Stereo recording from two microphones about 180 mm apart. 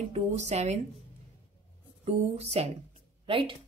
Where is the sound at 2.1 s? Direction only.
35° right (ahead or behind).